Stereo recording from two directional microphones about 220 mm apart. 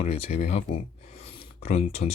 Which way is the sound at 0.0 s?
25° left (ahead or behind).